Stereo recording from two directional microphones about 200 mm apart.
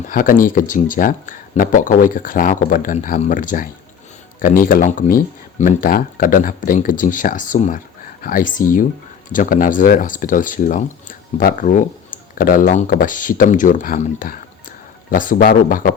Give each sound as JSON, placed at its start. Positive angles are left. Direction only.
{"t": 0.1, "sound": "speech", "side_deg": 45}